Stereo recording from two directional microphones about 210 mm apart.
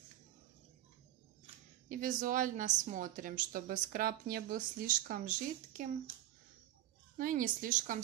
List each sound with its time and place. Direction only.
1.9 s a woman's voice: 40° right (ahead or behind)
7.2 s a woman's voice: 40° right (ahead or behind)